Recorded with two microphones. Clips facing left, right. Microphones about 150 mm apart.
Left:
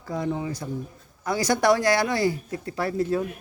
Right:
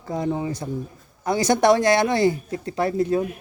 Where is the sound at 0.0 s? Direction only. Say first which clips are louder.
Right 3 dB; 25° right (ahead or behind).